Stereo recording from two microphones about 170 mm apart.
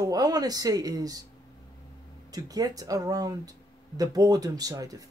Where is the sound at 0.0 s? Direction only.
20° right (ahead or behind).